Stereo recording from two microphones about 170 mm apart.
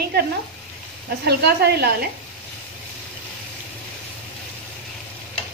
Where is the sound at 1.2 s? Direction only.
75° right (ahead or behind).